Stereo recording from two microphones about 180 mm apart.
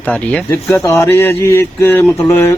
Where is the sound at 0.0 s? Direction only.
10° left (ahead or behind).